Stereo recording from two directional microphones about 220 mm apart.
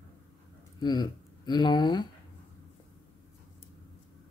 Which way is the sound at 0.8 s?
20° left (ahead or behind).